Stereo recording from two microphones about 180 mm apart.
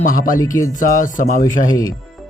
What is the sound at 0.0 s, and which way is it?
Speech, 50° left (ahead or behind).